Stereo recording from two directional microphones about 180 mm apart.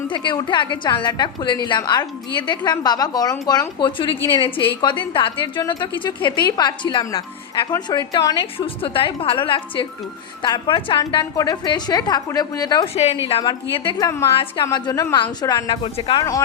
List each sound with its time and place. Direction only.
0.1 s a woman's voice: 25° left (ahead or behind)